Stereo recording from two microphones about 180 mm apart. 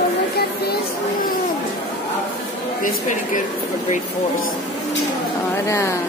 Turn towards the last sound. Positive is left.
turn(degrees=15)  # may be behind; listen again after turning